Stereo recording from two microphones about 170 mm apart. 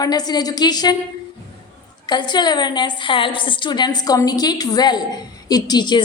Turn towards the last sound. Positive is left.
turn(degrees=25)  # may be behind; listen again after turning